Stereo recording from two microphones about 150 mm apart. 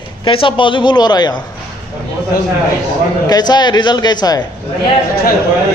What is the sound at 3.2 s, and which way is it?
A man's voice, 25° left (ahead or behind).